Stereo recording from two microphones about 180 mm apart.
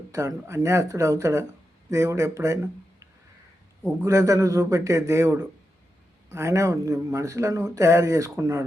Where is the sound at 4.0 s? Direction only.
15° right (ahead or behind).